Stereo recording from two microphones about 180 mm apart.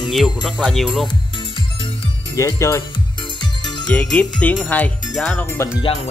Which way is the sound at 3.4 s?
25° left (ahead or behind).